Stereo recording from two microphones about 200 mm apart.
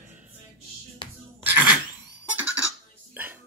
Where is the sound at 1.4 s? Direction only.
10° right (ahead or behind).